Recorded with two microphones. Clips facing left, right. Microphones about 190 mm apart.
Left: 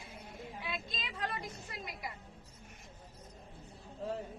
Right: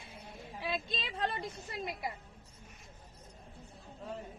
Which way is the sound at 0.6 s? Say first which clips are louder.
Right 7 dB; 30° right (ahead or behind).